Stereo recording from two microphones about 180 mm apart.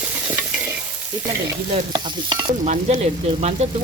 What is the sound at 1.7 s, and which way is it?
Speech, 25° right (ahead or behind).